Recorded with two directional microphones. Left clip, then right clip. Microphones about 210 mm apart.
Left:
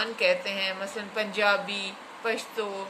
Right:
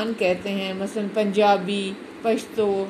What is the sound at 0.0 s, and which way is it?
A woman's voice, 10° right (ahead or behind).